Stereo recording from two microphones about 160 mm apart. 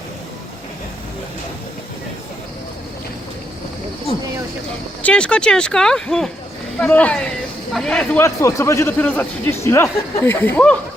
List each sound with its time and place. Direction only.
5.0 s a man's voice: 5° left (ahead or behind)
8.2 s a man's voice: 20° left (ahead or behind)